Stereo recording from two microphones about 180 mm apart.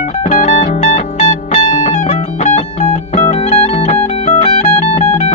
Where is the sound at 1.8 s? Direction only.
40° left (ahead or behind).